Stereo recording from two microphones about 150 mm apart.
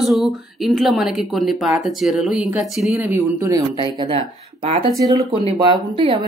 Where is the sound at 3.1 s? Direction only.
20° right (ahead or behind); by 4.9 s 40° right (ahead or behind).